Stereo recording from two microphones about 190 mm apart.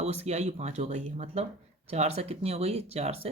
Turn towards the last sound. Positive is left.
turn(degrees=-30)  # may be behind; listen again after turning